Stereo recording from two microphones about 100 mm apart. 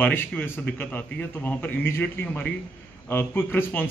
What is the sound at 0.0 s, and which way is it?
A man's voice, 20° left (ahead or behind).